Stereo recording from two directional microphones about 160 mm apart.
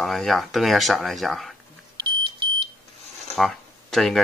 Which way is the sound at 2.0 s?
30° right (ahead or behind).